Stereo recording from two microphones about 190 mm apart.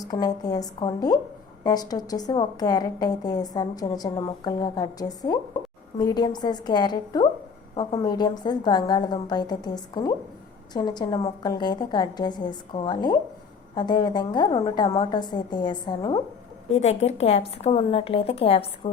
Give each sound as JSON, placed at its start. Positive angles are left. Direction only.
{"t": 0.0, "sound": "a woman's voice", "side_deg": 20}
{"t": 16.7, "sound": "a woman's voice", "side_deg": 35}